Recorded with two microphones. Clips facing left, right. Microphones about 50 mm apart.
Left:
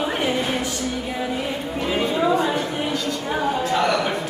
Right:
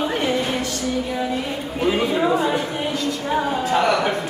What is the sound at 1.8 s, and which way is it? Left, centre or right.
Chatter, centre.